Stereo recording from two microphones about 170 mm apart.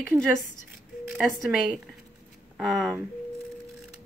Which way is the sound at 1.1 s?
Centre (ahead or behind).